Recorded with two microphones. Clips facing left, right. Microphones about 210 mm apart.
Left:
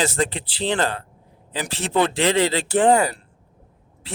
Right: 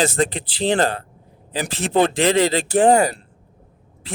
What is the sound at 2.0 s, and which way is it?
Speech, 45° right (ahead or behind).